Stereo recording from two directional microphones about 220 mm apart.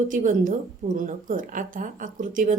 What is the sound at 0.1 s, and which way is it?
Speech, 35° right (ahead or behind).